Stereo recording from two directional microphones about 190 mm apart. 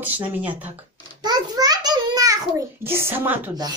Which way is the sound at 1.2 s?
20° right (ahead or behind).